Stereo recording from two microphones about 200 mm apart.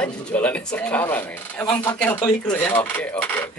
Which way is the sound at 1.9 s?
10° left (ahead or behind).